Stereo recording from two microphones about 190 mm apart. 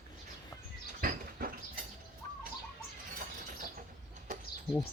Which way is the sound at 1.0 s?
50° right (ahead or behind).